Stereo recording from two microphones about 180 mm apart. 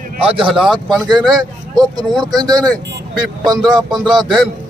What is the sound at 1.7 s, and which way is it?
Speech, 25° right (ahead or behind).